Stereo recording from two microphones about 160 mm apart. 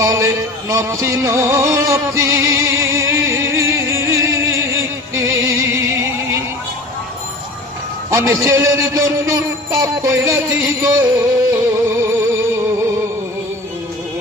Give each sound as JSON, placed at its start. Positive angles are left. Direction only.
{"t": 0.0, "sound": "music", "side_deg": -20}
{"t": 8.1, "sound": "a man's voice", "side_deg": -20}
{"t": 11.5, "sound": "music", "side_deg": -15}